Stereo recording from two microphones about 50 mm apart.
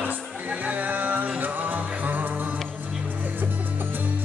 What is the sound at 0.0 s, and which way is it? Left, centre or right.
Music, right.